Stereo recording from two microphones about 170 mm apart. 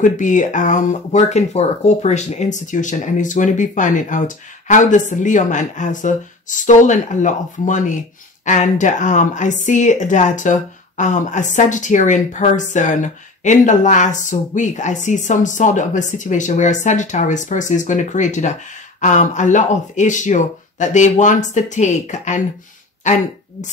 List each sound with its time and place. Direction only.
0.0 s a woman's voice: 50° left (ahead or behind)